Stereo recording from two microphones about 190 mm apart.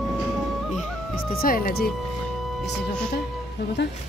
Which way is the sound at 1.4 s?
50° left (ahead or behind).